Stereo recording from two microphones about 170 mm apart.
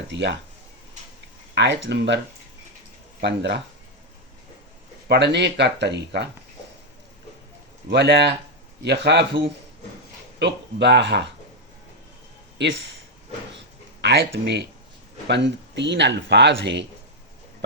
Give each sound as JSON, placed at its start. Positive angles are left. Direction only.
{"t": 0.1, "sound": "speech", "side_deg": -90}
{"t": 1.5, "sound": "speech", "side_deg": -90}
{"t": 5.0, "sound": "speech", "side_deg": -80}
{"t": 7.9, "sound": "speech", "side_deg": -80}
{"t": 10.4, "sound": "speech", "side_deg": -85}
{"t": 12.5, "sound": "speech", "side_deg": -90}
{"t": 14.0, "sound": "speech", "side_deg": -80}